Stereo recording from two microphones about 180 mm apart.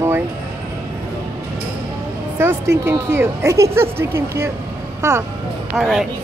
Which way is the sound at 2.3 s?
15° right (ahead or behind).